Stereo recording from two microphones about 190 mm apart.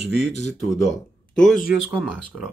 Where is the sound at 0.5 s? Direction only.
Centre (ahead or behind).